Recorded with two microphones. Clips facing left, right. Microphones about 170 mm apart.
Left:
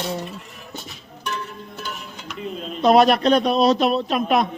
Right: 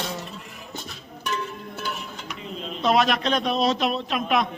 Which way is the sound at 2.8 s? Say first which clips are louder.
Left 7 dB; 40° left (ahead or behind).